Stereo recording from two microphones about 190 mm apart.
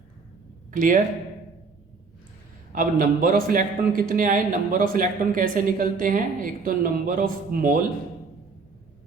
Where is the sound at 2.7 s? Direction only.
45° right (ahead or behind).